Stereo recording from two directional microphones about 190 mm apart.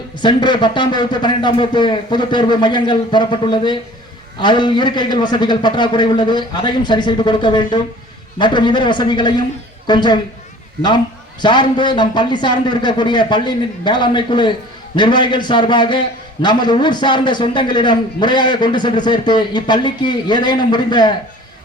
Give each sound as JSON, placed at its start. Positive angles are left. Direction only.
{"t": 0.2, "sound": "a man's voice", "side_deg": 25}